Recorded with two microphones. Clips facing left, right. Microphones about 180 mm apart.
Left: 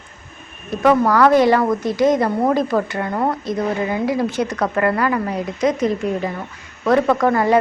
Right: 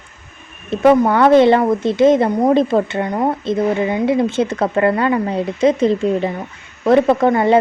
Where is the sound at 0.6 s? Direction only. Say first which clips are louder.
Right 3 dB; 25° right (ahead or behind).